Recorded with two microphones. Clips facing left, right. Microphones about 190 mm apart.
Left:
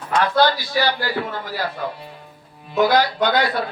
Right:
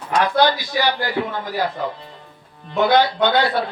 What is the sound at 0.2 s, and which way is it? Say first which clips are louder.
A man's voice: right 1 dB; 15° right (ahead or behind).